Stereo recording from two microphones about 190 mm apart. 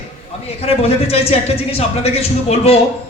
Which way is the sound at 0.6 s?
30° left (ahead or behind).